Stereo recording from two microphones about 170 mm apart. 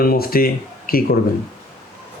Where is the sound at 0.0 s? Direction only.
60° left (ahead or behind).